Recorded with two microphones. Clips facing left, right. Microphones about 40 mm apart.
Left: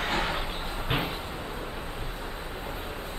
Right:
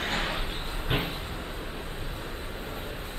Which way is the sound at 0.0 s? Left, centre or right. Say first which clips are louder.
Left 2 dB; centre.